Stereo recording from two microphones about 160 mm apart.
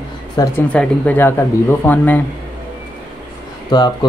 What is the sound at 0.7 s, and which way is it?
Speech, 10° left (ahead or behind).